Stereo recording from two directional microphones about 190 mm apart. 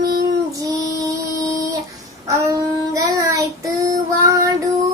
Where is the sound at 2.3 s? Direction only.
15° right (ahead or behind).